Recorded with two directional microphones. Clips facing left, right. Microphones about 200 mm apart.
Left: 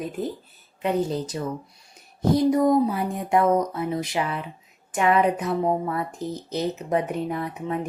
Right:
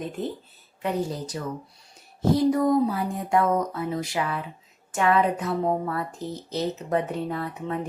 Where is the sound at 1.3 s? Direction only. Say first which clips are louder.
Left 3 dB; 20° left (ahead or behind).